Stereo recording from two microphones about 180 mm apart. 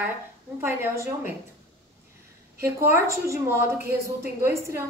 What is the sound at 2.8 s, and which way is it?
A woman's voice, 15° right (ahead or behind).